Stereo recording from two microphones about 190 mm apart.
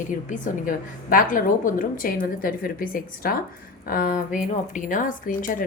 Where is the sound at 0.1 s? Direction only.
40° left (ahead or behind).